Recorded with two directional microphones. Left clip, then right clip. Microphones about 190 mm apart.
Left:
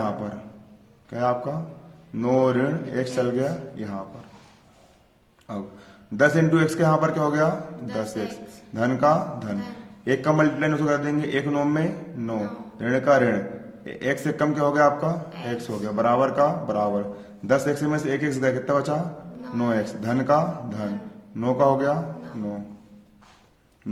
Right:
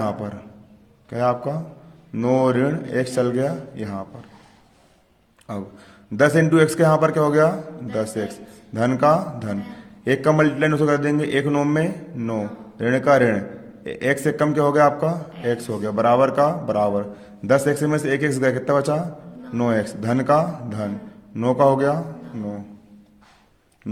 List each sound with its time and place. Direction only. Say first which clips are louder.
1.1 s a man's voice: right 3 dB; 40° right (ahead or behind)
5.5 s a man's voice: right 3 dB; 40° right (ahead or behind)